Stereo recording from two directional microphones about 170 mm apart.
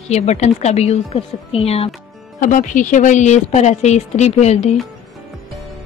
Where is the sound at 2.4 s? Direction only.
50° left (ahead or behind).